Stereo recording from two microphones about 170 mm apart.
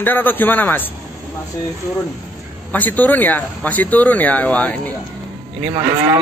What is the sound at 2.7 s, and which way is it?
Speech, 10° left (ahead or behind).